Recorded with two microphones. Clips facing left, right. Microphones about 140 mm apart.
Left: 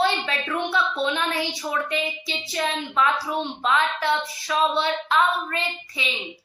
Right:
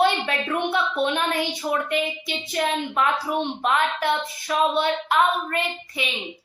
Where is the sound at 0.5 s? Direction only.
15° right (ahead or behind).